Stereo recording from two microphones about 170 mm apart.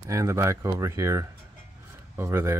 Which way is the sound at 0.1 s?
15° right (ahead or behind).